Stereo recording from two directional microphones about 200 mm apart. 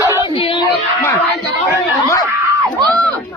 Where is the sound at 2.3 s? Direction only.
15° right (ahead or behind).